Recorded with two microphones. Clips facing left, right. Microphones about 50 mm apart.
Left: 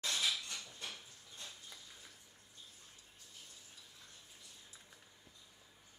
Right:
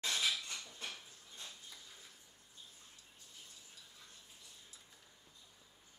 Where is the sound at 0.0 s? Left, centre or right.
Right.